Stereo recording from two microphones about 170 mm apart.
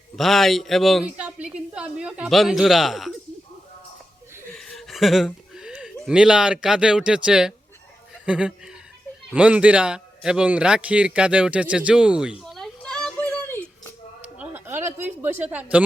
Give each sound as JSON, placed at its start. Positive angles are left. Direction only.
{"t": 0.2, "sound": "a man's voice", "side_deg": 0}
{"t": 4.5, "sound": "speech", "side_deg": 0}
{"t": 8.1, "sound": "chuckle", "side_deg": -5}
{"t": 9.3, "sound": "a man's voice", "side_deg": -5}
{"t": 14.3, "sound": "a woman's voice", "side_deg": -10}